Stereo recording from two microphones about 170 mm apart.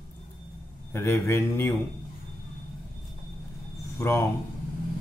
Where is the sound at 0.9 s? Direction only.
15° left (ahead or behind).